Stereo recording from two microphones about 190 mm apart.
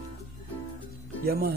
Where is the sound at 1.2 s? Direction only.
55° right (ahead or behind).